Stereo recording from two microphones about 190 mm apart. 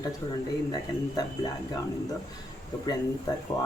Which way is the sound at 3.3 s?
20° left (ahead or behind).